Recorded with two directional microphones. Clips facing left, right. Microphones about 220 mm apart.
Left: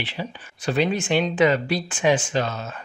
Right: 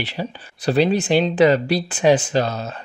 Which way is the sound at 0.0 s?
40° right (ahead or behind).